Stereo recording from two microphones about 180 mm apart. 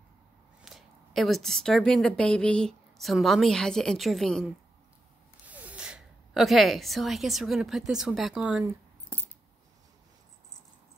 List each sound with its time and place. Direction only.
0.6 s speech: centre (ahead or behind)
5.5 s speech: 10° right (ahead or behind)